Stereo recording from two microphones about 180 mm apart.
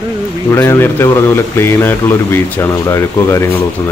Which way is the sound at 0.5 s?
15° left (ahead or behind).